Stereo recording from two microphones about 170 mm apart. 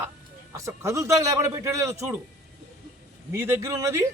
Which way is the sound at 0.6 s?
15° right (ahead or behind).